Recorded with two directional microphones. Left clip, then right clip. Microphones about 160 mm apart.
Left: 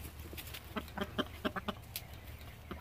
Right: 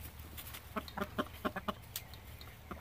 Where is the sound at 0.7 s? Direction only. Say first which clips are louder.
Right 1 dB; 5° left (ahead or behind).